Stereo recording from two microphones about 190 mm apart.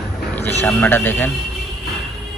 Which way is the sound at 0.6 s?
10° left (ahead or behind).